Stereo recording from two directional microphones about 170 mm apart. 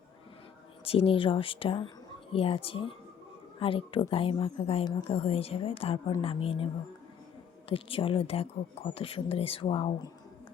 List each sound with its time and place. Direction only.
0.9 s speech: 35° left (ahead or behind)
7.7 s speech: 30° left (ahead or behind)